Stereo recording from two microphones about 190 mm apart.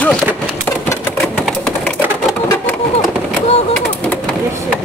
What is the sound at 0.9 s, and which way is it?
Sewing machine, 10° left (ahead or behind).